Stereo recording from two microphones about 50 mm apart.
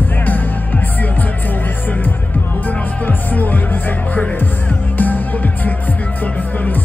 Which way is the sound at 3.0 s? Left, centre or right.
Left.